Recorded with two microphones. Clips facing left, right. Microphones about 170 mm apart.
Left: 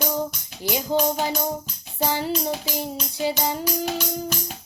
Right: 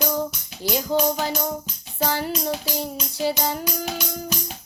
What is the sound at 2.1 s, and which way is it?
Music, 20° left (ahead or behind).